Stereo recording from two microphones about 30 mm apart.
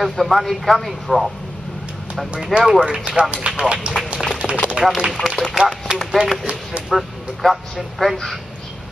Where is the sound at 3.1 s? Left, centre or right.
Right.